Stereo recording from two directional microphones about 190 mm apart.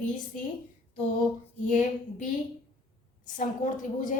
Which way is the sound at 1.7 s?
40° left (ahead or behind).